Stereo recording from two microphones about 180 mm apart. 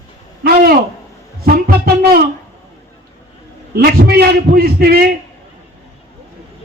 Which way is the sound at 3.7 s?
55° right (ahead or behind).